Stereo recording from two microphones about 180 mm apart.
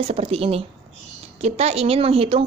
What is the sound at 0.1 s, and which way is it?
A woman's voice, 35° right (ahead or behind).